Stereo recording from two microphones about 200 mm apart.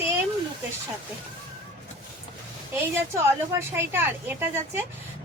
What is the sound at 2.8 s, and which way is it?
A woman's voice, 10° right (ahead or behind).